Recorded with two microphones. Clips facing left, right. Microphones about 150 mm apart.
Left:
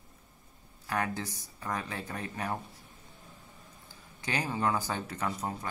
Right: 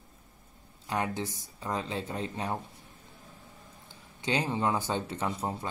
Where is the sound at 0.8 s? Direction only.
20° right (ahead or behind).